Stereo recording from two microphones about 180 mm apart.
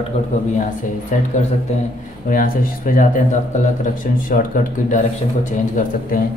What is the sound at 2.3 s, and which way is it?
Speech, 55° left (ahead or behind).